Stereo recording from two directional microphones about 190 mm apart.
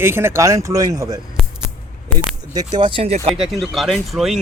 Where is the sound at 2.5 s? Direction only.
20° right (ahead or behind).